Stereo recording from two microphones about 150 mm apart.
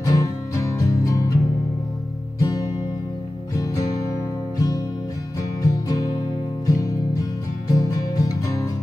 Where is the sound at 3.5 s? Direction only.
20° left (ahead or behind).